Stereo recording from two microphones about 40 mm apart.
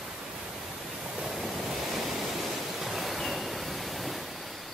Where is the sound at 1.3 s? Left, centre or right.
Centre.